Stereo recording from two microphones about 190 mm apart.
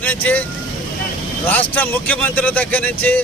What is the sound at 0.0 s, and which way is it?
Speech, 10° left (ahead or behind).